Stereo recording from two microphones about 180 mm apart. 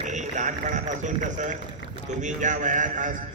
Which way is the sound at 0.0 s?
40° right (ahead or behind).